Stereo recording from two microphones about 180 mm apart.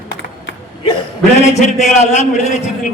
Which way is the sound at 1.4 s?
40° left (ahead or behind).